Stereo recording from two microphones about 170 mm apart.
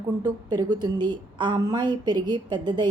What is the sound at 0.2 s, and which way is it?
A woman's voice, 25° right (ahead or behind).